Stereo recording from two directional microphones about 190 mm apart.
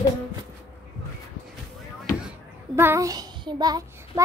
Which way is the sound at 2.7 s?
15° right (ahead or behind).